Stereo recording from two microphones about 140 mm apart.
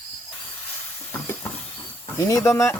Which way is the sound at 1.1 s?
15° left (ahead or behind).